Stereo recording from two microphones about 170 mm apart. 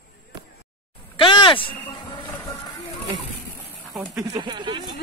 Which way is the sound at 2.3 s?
20° left (ahead or behind).